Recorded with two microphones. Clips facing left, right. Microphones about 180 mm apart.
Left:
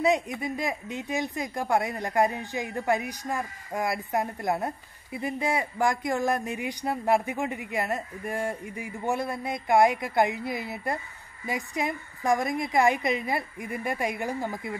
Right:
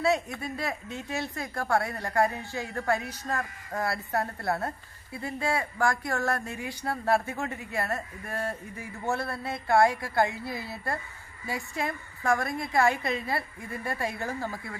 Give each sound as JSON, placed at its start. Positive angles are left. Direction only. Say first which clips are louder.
{"t": 0.0, "sound": "speech", "louder": "left 2 dB", "side_deg": 15}